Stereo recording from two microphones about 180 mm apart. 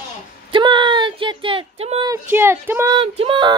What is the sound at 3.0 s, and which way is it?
Speech, 30° right (ahead or behind).